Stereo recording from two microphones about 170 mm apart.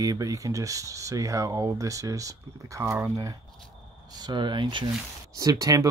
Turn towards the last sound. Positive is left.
turn(degrees=-20)  # may be behind; listen again after turning